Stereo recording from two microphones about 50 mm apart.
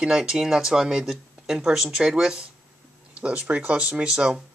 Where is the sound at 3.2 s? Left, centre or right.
Right.